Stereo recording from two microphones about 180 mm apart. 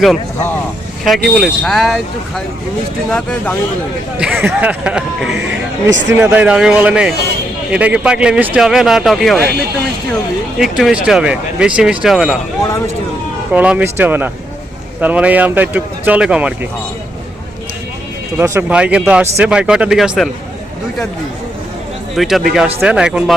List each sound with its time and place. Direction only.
1.0 s speech: centre (ahead or behind)
4.2 s speech: 10° right (ahead or behind)
5.3 s speech: 85° right
6.1 s speech: 10° right (ahead or behind)
10.6 s speech: centre (ahead or behind)
12.6 s speech: 15° left (ahead or behind)
13.5 s speech: 5° right (ahead or behind)
18.3 s speech: 15° right (ahead or behind)
22.1 s speech: centre (ahead or behind)